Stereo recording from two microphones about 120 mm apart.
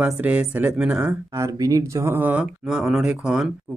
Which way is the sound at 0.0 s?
10° right (ahead or behind).